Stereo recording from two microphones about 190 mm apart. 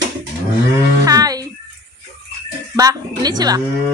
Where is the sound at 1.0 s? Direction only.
20° right (ahead or behind).